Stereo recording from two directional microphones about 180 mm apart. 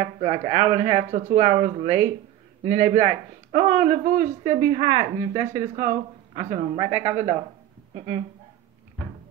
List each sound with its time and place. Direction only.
0.0 s speech: 35° right (ahead or behind)